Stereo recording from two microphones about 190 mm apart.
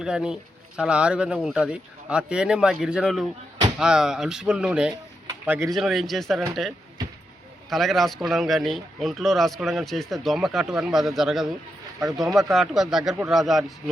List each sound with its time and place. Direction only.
0.0 s speech: 5° right (ahead or behind)
5.3 s a sound: 15° right (ahead or behind)
5.7 s speech: centre (ahead or behind)
11.9 s speech: 15° right (ahead or behind)
12.2 s speech: centre (ahead or behind)